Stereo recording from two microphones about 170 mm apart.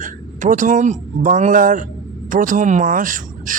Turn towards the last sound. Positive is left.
turn(degrees=-50)  # may be behind; listen again after turning